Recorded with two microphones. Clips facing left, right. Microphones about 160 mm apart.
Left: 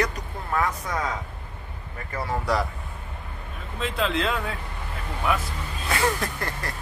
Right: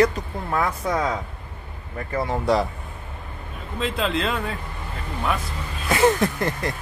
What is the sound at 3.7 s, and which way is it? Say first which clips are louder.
Speech: right 2 dB; centre (ahead or behind).